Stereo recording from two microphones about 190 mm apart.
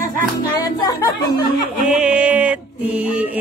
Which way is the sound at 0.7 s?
20° left (ahead or behind).